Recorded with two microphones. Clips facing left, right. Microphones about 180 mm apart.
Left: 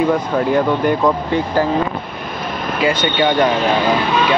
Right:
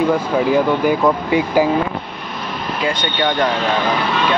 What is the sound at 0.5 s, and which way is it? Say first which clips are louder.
Speech: even; 10° right (ahead or behind).